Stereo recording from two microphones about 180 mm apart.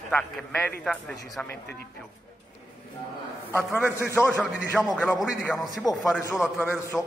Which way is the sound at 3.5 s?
10° left (ahead or behind).